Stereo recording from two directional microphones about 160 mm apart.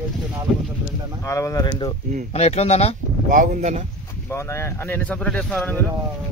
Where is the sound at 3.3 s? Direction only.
55° right (ahead or behind).